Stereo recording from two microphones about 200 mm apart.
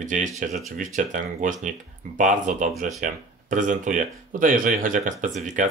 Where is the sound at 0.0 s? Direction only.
40° right (ahead or behind).